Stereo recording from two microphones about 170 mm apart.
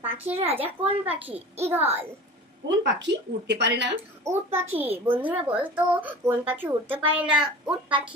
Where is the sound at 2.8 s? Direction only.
90° right.